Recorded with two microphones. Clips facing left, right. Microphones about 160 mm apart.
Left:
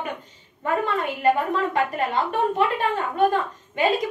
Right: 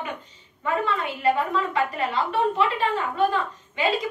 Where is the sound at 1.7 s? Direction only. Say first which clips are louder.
Left 2 dB; 50° left (ahead or behind).